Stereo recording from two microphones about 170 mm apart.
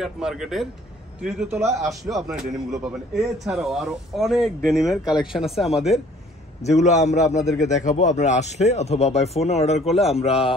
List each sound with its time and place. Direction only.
0.0 s a man's voice: centre (ahead or behind)
6.6 s speech: 40° left (ahead or behind)